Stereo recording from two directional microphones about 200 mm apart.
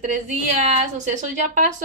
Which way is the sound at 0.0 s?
40° right (ahead or behind).